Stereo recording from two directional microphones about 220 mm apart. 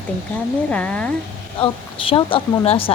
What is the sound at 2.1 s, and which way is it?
Speech, 25° left (ahead or behind).